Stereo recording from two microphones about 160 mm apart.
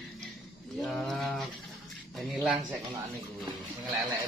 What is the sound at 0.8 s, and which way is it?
Mantra, centre (ahead or behind).